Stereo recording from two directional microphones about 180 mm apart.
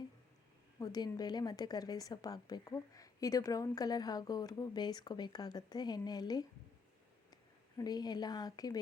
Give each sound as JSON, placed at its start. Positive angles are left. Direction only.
{"t": 0.8, "sound": "a woman's voice", "side_deg": 20}
{"t": 7.8, "sound": "a woman's voice", "side_deg": 20}